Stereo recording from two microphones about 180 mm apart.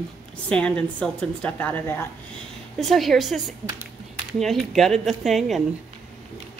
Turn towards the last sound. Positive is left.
turn(degrees=0)  # may be behind; listen again after turning